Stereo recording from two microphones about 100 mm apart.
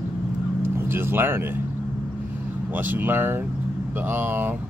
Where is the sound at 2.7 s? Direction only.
20° right (ahead or behind).